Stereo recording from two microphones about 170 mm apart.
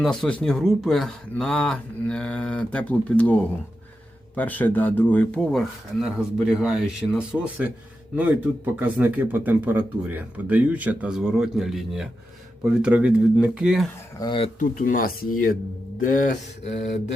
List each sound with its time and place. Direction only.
0.0 s speech: 5° left (ahead or behind)
14.2 s speech: 30° left (ahead or behind)
14.6 s speech: 50° left (ahead or behind)